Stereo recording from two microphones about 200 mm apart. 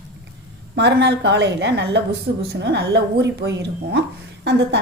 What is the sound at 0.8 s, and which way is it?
A woman's voice, 60° right (ahead or behind).